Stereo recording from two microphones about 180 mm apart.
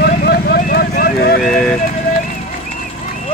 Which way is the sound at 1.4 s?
5° left (ahead or behind).